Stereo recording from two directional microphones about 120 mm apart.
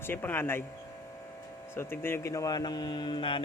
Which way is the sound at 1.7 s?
20° left (ahead or behind).